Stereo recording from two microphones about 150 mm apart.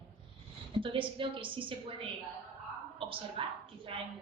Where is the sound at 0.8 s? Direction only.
35° right (ahead or behind).